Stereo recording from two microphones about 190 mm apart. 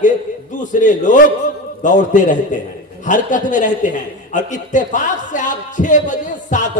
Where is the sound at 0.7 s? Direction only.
40° left (ahead or behind).